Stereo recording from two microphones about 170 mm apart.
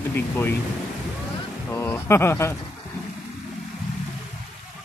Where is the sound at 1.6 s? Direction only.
15° left (ahead or behind).